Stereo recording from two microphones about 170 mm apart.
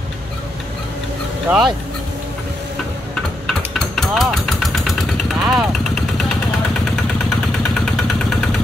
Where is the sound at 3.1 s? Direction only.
5° left (ahead or behind).